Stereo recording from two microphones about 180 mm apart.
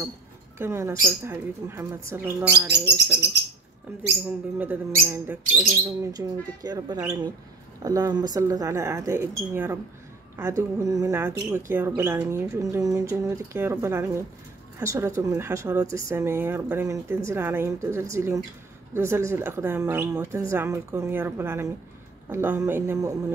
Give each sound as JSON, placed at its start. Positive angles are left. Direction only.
{"t": 0.6, "sound": "speech", "side_deg": -15}
{"t": 2.7, "sound": "speech", "side_deg": -70}
{"t": 4.3, "sound": "speech", "side_deg": -10}
{"t": 6.1, "sound": "speech", "side_deg": -20}